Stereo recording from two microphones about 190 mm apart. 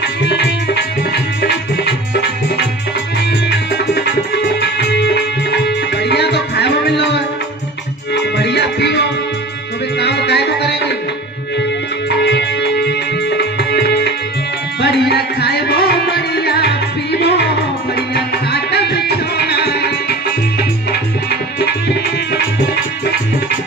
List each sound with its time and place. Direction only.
0.0 s music: 65° left (ahead or behind)
12.1 s music: 65° left (ahead or behind)